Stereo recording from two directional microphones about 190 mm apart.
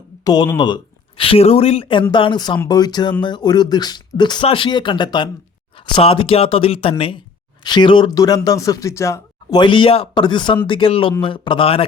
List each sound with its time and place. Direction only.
0.3 s speech: 20° left (ahead or behind)